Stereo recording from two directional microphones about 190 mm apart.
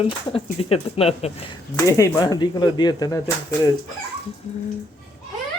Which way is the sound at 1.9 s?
15° left (ahead or behind).